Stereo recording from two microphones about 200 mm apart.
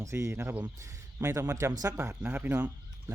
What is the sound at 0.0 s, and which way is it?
Speech, 15° right (ahead or behind).